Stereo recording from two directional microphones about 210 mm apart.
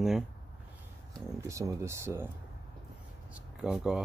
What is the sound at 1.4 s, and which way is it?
Speech, 15° right (ahead or behind).